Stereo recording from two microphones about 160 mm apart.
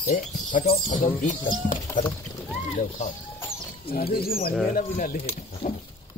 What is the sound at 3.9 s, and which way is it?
Speech, 70° left (ahead or behind).